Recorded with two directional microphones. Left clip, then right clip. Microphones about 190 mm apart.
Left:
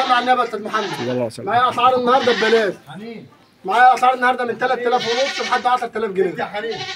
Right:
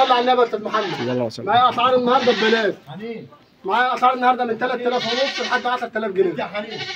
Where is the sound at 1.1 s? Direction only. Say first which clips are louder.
Right 1 dB; 5° left (ahead or behind).